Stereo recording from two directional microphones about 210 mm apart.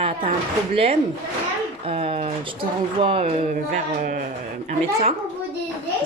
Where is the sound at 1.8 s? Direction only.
25° right (ahead or behind).